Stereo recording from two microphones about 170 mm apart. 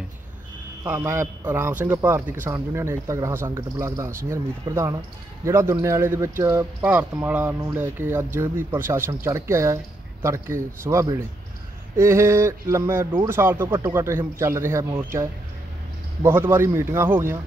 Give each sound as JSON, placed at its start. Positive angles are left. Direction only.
{"t": 0.9, "sound": "a man's voice", "side_deg": -15}
{"t": 16.2, "sound": "a man's voice", "side_deg": -15}